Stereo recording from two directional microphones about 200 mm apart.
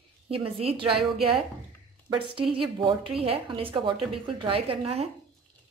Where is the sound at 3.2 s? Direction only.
25° right (ahead or behind).